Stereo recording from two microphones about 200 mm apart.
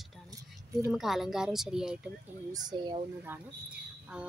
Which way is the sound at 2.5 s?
20° right (ahead or behind).